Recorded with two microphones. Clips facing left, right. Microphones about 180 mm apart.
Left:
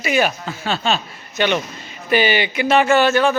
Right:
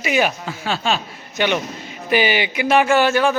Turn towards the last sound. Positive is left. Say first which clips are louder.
# left 1 dB
turn(degrees=-15)  # may be behind; listen again after turning